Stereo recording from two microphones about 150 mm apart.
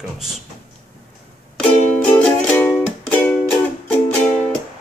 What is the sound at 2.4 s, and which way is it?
Music, 15° left (ahead or behind).